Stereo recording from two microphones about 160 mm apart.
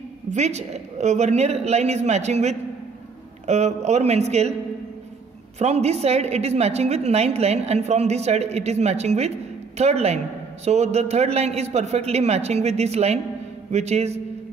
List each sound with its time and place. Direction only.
0.3 s a woman's voice: 45° right (ahead or behind)
5.6 s a woman's voice: 40° right (ahead or behind)